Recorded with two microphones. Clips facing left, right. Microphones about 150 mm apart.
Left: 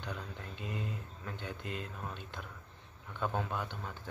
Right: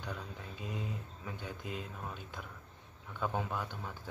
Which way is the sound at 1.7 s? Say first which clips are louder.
Even; 5° right (ahead or behind).